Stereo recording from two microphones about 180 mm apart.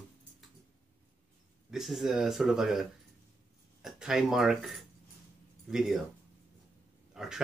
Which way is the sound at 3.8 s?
5° right (ahead or behind).